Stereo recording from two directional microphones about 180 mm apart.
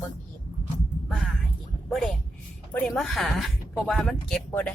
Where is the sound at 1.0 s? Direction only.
Centre (ahead or behind).